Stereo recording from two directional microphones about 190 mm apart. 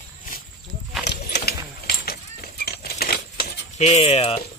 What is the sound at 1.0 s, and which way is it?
Horse, 60° left (ahead or behind).